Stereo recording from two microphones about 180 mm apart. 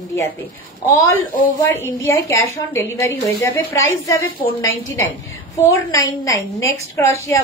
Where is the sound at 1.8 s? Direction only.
15° left (ahead or behind).